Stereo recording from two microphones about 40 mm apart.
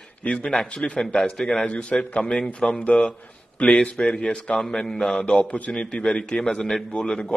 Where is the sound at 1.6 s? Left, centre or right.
Left.